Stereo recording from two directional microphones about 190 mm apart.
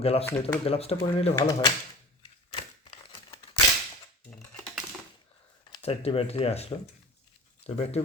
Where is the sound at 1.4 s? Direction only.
20° left (ahead or behind).